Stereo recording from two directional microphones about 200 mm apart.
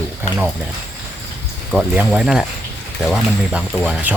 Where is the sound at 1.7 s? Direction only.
Centre (ahead or behind).